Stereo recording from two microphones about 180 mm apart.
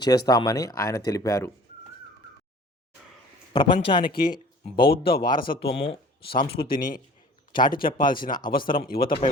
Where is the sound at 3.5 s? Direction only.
25° left (ahead or behind).